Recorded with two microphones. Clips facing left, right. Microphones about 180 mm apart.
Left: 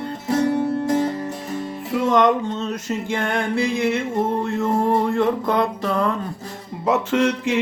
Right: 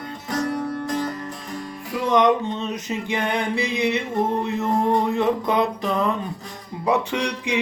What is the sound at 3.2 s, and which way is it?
Mantra, centre (ahead or behind).